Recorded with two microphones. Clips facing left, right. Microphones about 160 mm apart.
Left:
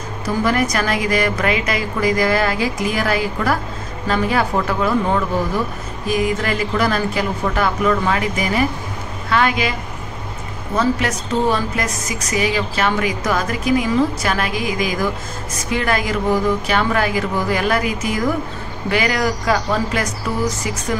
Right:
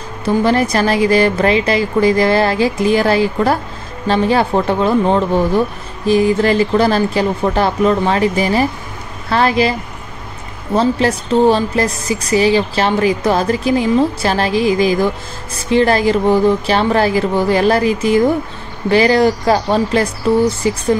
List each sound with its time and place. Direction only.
0.2 s a woman's voice: 30° right (ahead or behind)